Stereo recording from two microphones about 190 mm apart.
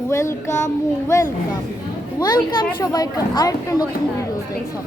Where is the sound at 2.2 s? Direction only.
20° left (ahead or behind).